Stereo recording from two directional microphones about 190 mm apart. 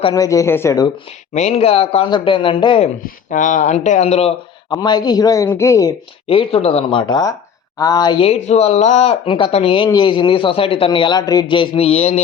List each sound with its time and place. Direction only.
0.1 s a man's voice: 15° left (ahead or behind)
1.3 s speech: 35° left (ahead or behind)
4.7 s speech: 20° left (ahead or behind)
6.2 s speech: 30° left (ahead or behind)